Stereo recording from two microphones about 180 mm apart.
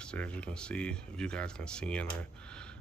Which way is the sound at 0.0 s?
5° left (ahead or behind).